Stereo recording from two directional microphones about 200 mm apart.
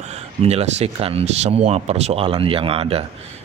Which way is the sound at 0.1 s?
30° right (ahead or behind).